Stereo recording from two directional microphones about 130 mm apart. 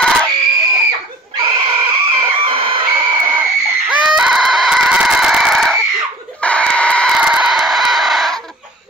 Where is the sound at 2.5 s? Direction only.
45° right (ahead or behind).